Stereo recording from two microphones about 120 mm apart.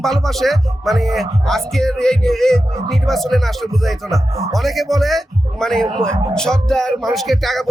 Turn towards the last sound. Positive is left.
turn(degrees=0)  # may be behind; listen again after turning